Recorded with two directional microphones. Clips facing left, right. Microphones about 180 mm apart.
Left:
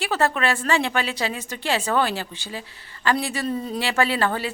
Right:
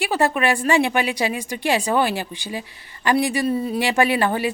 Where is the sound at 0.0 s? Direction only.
15° right (ahead or behind).